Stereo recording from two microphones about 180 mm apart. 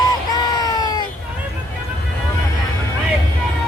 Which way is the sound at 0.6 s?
20° left (ahead or behind).